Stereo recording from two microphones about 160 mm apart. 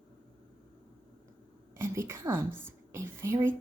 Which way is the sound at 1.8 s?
15° right (ahead or behind).